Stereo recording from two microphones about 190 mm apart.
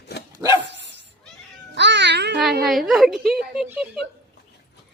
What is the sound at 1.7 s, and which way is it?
Speech, 65° right (ahead or behind).